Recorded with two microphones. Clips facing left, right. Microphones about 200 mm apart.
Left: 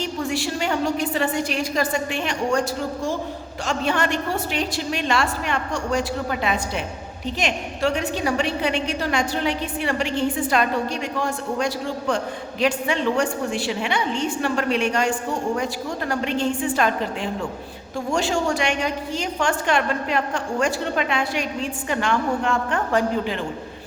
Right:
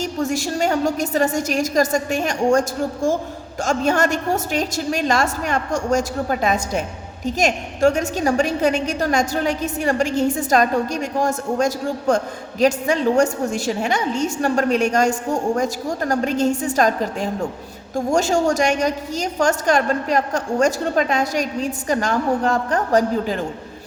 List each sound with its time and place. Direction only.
0.0 s a woman's voice: 45° right (ahead or behind)